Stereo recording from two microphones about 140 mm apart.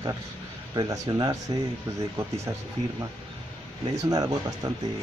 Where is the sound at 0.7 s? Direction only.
25° right (ahead or behind).